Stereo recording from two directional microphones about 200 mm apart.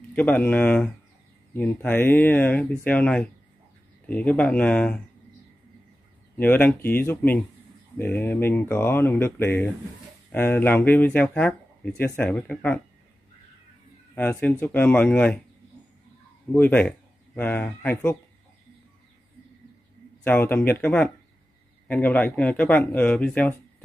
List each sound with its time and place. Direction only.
0.1 s speech: 5° left (ahead or behind)
6.3 s speech: 10° left (ahead or behind)
14.1 s speech: 10° left (ahead or behind)
16.5 s speech: 10° left (ahead or behind)
20.2 s speech: 10° left (ahead or behind)